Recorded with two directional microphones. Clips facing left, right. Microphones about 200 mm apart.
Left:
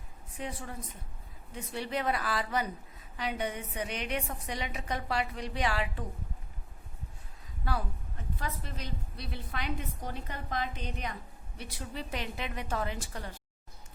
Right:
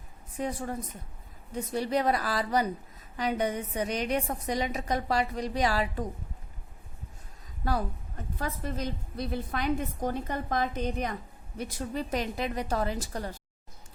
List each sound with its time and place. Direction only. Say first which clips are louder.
0.3 s a woman's voice: right 7 dB; 45° right (ahead or behind)
7.6 s a woman's voice: right 5 dB; 40° right (ahead or behind)